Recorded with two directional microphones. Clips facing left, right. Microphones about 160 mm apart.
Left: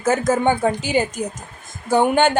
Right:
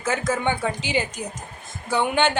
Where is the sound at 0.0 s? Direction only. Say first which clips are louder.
Left 6 dB; 45° left (ahead or behind).